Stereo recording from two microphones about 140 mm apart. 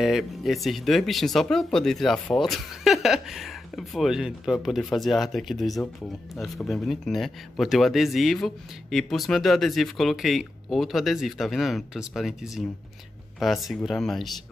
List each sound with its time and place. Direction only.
0.0 s speech: centre (ahead or behind)